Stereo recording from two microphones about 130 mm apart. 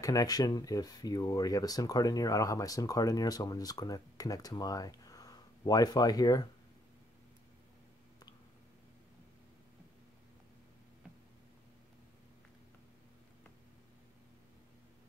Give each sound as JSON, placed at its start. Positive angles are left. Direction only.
{"t": 0.0, "sound": "speech", "side_deg": 25}